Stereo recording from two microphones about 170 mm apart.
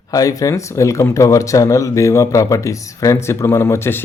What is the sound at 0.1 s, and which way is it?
Speech, 20° left (ahead or behind).